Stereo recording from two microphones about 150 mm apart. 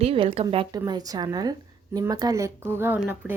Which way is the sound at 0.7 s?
25° right (ahead or behind).